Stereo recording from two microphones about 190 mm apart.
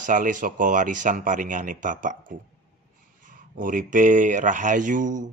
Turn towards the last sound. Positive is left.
turn(degrees=-45)  # may be behind; listen again after turning